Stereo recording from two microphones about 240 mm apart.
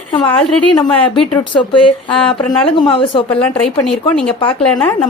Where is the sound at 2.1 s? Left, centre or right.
Centre.